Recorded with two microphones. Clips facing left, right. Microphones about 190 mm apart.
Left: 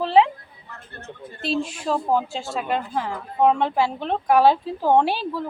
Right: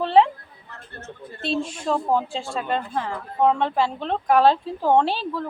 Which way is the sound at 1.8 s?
5° left (ahead or behind).